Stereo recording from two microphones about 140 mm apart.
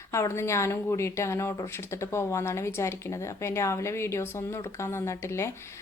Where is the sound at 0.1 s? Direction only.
20° left (ahead or behind).